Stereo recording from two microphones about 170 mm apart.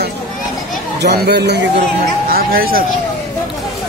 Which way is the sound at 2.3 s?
60° right (ahead or behind).